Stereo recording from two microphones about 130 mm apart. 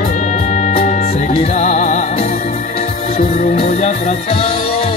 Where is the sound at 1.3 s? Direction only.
60° left (ahead or behind).